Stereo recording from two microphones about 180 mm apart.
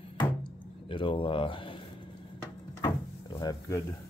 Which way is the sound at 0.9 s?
30° left (ahead or behind).